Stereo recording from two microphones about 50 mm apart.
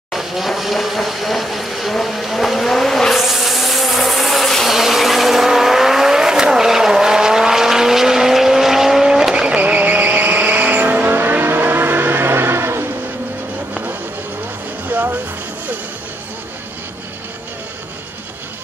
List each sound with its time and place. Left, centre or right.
0.1 s a sound: centre
4.6 s vehicle: centre
9.6 s vehicle: right
14.9 s music: right